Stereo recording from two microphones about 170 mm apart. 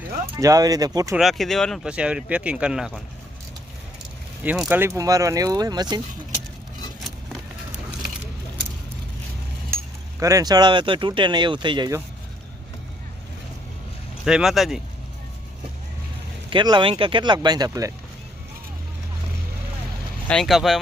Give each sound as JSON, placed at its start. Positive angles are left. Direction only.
{"t": 0.3, "sound": "speech", "side_deg": -20}
{"t": 1.1, "sound": "speech", "side_deg": 0}
{"t": 4.4, "sound": "speech", "side_deg": -5}
{"t": 10.2, "sound": "speech", "side_deg": -20}
{"t": 14.3, "sound": "speech", "side_deg": -5}
{"t": 16.5, "sound": "speech", "side_deg": -25}
{"t": 20.2, "sound": "speech", "side_deg": 5}